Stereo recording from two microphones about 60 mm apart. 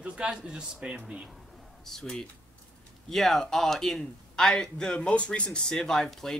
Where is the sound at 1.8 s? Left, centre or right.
Centre.